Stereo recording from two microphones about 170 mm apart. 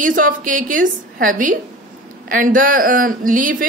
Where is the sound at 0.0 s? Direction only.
50° right (ahead or behind).